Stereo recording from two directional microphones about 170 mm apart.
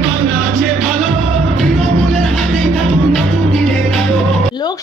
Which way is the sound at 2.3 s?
5° left (ahead or behind).